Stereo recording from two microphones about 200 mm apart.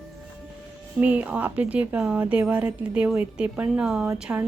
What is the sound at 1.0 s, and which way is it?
A woman's voice, 5° right (ahead or behind).